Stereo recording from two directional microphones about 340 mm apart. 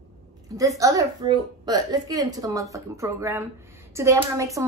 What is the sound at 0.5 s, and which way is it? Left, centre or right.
A woman's voice, centre.